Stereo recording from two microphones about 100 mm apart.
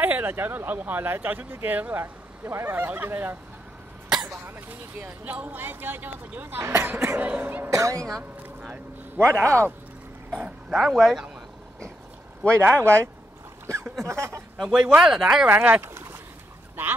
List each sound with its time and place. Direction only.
0.0 s speech: 20° right (ahead or behind)
7.7 s a woman's voice: 30° right (ahead or behind)
8.2 s a man's voice: 15° right (ahead or behind)
9.2 s speech: 30° right (ahead or behind)
10.3 s speech: 10° right (ahead or behind)
12.5 s speech: 25° right (ahead or behind)
14.6 s speech: 10° right (ahead or behind)
15.5 s speech: 20° right (ahead or behind)